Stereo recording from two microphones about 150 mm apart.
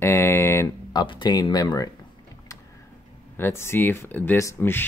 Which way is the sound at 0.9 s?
30° left (ahead or behind).